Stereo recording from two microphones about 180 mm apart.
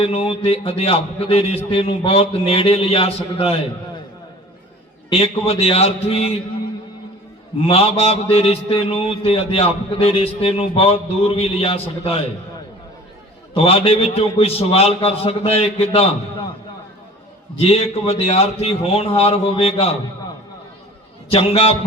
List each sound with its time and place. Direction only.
0.0 s mantra: 30° left (ahead or behind)
5.0 s mantra: 35° left (ahead or behind)
7.7 s mantra: 35° left (ahead or behind)
13.5 s mantra: 35° left (ahead or behind)
17.6 s mantra: 35° left (ahead or behind)
21.2 s mantra: 35° left (ahead or behind)